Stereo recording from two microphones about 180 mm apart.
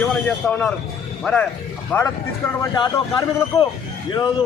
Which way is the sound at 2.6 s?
20° left (ahead or behind).